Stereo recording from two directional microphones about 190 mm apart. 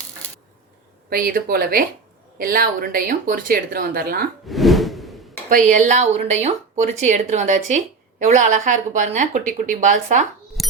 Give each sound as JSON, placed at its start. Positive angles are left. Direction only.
{"t": 1.1, "sound": "speech", "side_deg": -50}
{"t": 4.4, "sound": "whoosh", "side_deg": 0}
{"t": 5.5, "sound": "speech", "side_deg": -45}
{"t": 10.6, "sound": "a sound", "side_deg": 0}